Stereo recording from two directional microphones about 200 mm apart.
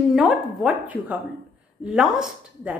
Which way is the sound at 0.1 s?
Centre (ahead or behind).